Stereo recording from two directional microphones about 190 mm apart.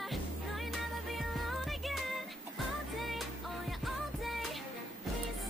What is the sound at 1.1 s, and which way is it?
Music, centre (ahead or behind).